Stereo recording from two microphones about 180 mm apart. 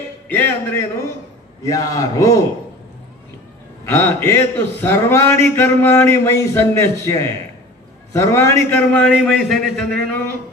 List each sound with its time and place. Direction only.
0.3 s a man's voice: 10° left (ahead or behind)
3.8 s a man's voice: 15° left (ahead or behind)